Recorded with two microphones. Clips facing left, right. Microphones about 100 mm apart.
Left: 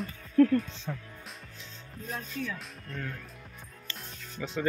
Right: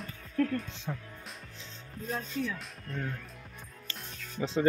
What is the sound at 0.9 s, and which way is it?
Speech, 10° right (ahead or behind).